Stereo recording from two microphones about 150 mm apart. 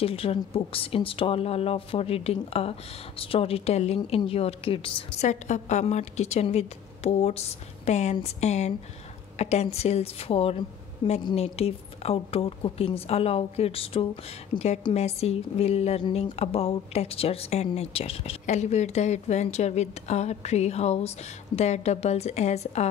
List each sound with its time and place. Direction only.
0.0 s a woman's voice: 40° left (ahead or behind)
11.3 s a woman's voice: 40° left (ahead or behind)